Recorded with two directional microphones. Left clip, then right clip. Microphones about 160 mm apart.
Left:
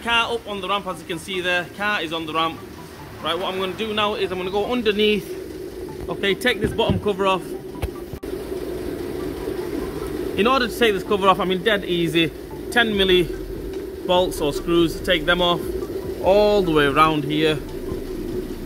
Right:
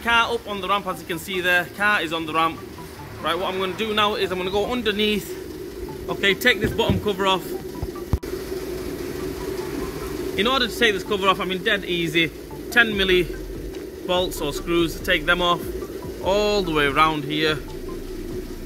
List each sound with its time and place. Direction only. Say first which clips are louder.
0.0 s a man's voice: right 1 dB; centre (ahead or behind)
4.6 s a man's voice: left 3 dB; 20° left (ahead or behind)
10.3 s a man's voice: left 2 dB; 25° left (ahead or behind); by 17.6 s centre (ahead or behind)